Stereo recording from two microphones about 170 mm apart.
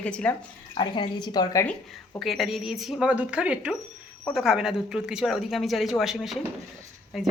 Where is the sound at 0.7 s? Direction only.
30° left (ahead or behind).